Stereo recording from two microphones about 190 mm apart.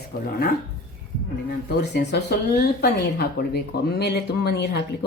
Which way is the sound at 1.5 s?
60° left (ahead or behind).